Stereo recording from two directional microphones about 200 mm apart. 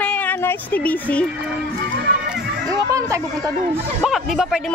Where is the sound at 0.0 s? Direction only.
5° left (ahead or behind).